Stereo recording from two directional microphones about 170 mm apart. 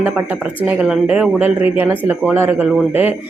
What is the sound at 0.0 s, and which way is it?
A woman's voice, 10° right (ahead or behind).